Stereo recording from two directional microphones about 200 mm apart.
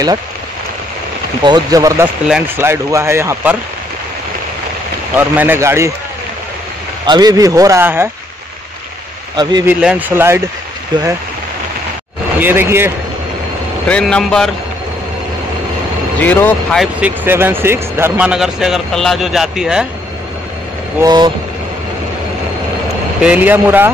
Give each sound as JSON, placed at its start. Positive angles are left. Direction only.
{"t": 1.4, "sound": "speech", "side_deg": -20}
{"t": 5.1, "sound": "speech", "side_deg": -10}
{"t": 7.1, "sound": "speech", "side_deg": -20}
{"t": 9.4, "sound": "speech", "side_deg": -20}
{"t": 9.7, "sound": "speech", "side_deg": -5}
{"t": 12.4, "sound": "speech", "side_deg": -10}
{"t": 13.8, "sound": "speech", "side_deg": 5}
{"t": 16.2, "sound": "speech", "side_deg": 10}
{"t": 16.8, "sound": "speech", "side_deg": -10}
{"t": 21.0, "sound": "speech", "side_deg": -20}
{"t": 23.2, "sound": "speech", "side_deg": -10}